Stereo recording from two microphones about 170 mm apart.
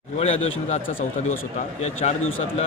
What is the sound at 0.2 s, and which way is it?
A man's voice, 40° left (ahead or behind).